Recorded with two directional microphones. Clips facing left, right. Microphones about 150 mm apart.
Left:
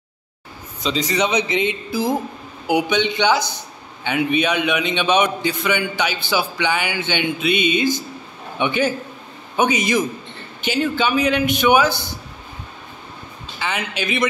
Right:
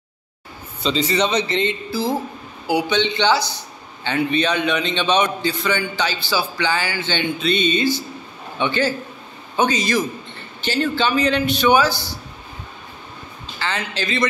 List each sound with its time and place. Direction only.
0.8 s a man's voice: 10° left (ahead or behind)
13.6 s speech: 15° left (ahead or behind)